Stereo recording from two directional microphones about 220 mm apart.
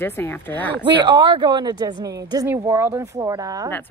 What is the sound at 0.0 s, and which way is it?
Speech, 10° left (ahead or behind).